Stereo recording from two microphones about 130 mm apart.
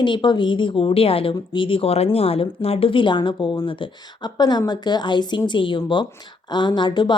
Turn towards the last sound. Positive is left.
turn(degrees=35)  # may be behind; listen again after turning